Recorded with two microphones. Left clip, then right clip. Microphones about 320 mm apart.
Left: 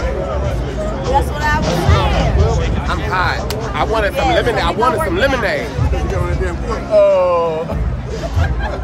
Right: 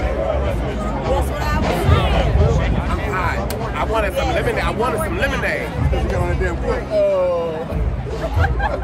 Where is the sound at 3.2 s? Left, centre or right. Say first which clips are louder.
Left 5 dB; left.